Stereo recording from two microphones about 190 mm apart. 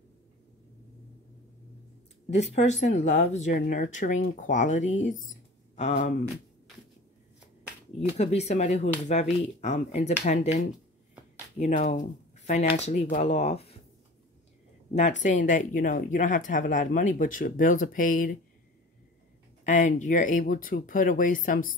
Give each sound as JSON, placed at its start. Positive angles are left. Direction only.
{"t": 2.3, "sound": "speech", "side_deg": 35}
{"t": 8.2, "sound": "speech", "side_deg": 35}
{"t": 11.6, "sound": "speech", "side_deg": 40}
{"t": 15.0, "sound": "a woman's voice", "side_deg": 40}
{"t": 19.6, "sound": "a woman's voice", "side_deg": 40}